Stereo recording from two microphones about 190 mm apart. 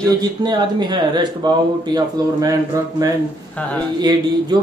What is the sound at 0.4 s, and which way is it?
Speech, 25° right (ahead or behind).